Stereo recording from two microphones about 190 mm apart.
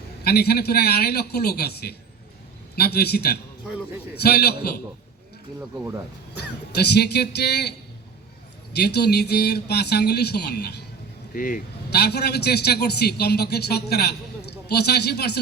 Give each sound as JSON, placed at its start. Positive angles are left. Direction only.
{"t": 0.3, "sound": "a man's voice", "side_deg": 55}
{"t": 5.5, "sound": "speech", "side_deg": -15}
{"t": 6.3, "sound": "a man's voice", "side_deg": 60}
{"t": 8.7, "sound": "a man's voice", "side_deg": 60}
{"t": 11.3, "sound": "a man's voice", "side_deg": 45}